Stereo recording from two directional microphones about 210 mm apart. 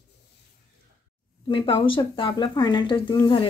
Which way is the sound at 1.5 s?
25° left (ahead or behind).